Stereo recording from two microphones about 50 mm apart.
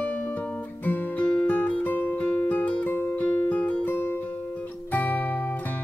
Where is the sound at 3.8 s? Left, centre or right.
Left.